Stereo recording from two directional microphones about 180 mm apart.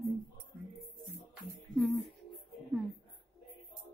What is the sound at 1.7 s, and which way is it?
Music, centre (ahead or behind).